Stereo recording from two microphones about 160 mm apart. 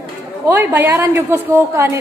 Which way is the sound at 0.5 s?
10° right (ahead or behind).